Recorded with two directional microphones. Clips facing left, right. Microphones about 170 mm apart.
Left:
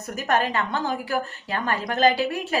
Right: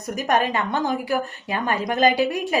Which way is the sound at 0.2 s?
15° right (ahead or behind).